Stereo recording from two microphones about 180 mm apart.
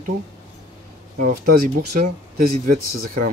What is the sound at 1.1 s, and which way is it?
Speech, 55° right (ahead or behind).